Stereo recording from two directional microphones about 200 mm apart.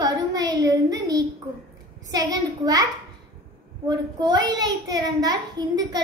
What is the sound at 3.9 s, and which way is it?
A woman's voice, 20° right (ahead or behind).